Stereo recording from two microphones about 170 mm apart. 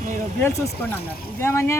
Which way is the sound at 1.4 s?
15° left (ahead or behind).